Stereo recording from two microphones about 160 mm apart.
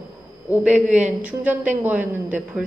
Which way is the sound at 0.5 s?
5° right (ahead or behind).